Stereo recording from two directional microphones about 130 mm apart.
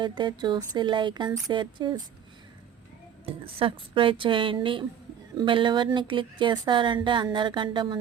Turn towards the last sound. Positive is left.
turn(degrees=-40)  # may be behind; listen again after turning